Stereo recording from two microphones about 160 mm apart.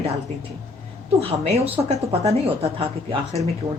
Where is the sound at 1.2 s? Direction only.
40° right (ahead or behind).